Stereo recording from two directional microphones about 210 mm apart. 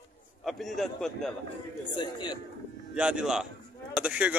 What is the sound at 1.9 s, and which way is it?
Speech, 20° left (ahead or behind).